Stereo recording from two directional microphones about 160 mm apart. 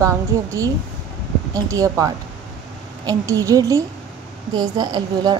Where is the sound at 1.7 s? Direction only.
20° right (ahead or behind).